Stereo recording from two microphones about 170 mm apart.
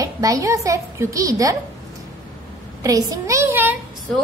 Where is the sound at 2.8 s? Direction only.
20° right (ahead or behind).